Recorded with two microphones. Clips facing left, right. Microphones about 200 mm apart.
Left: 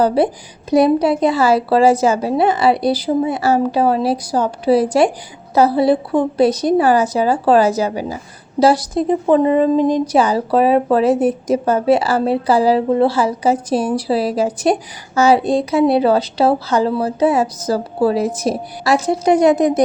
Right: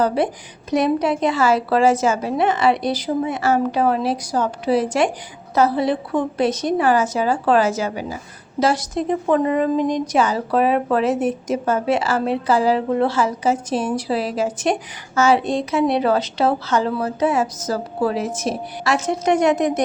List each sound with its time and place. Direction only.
0.0 s a woman's voice: 35° left (ahead or behind)